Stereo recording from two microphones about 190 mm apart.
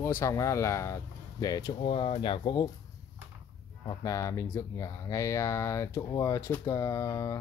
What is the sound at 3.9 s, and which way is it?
Speech, 15° left (ahead or behind).